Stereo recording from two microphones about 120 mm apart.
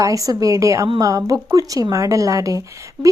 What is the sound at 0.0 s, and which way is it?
A woman's voice, 30° right (ahead or behind).